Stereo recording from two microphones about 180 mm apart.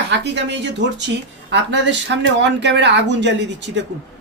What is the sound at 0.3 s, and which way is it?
A man's voice, 75° right (ahead or behind).